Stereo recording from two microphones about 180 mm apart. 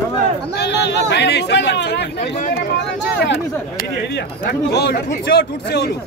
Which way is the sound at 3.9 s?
70° left (ahead or behind).